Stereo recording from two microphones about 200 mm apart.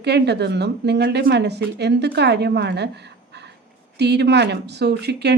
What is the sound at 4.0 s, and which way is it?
A woman's voice, 55° right (ahead or behind).